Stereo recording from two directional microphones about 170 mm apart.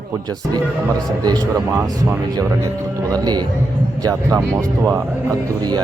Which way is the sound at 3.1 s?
25° right (ahead or behind).